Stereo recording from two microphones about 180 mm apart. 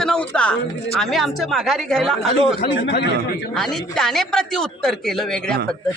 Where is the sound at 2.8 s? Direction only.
75° left (ahead or behind).